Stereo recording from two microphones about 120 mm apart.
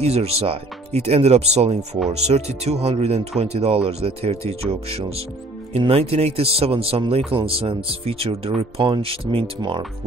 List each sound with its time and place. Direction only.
0.0 s speech: 60° right (ahead or behind)
9.6 s speech: 40° right (ahead or behind)